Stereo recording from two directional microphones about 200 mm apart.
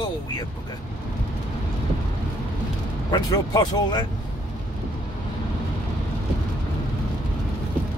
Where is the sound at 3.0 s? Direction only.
20° left (ahead or behind).